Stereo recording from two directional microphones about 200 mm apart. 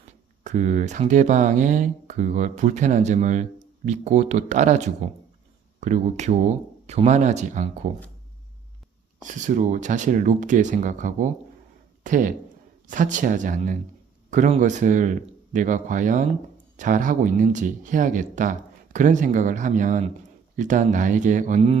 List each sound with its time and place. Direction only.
0.4 s speech: 35° right (ahead or behind)
9.2 s speech: 40° right (ahead or behind)